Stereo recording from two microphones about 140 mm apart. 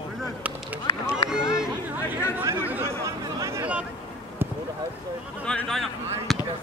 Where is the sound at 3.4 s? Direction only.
20° right (ahead or behind).